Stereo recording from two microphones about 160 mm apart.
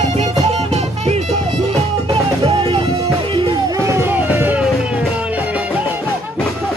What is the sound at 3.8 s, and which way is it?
Music, 15° right (ahead or behind).